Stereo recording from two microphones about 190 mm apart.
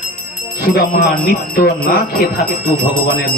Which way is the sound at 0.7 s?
50° left (ahead or behind).